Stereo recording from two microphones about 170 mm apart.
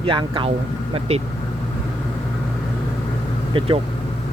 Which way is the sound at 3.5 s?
30° right (ahead or behind).